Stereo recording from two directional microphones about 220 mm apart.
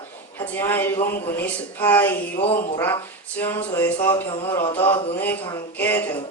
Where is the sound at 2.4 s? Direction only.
25° left (ahead or behind).